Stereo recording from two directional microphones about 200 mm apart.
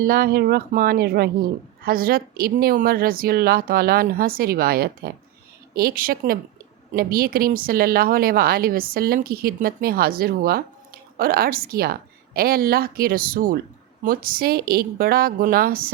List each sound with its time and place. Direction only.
0.0 s a woman's voice: 50° right (ahead or behind)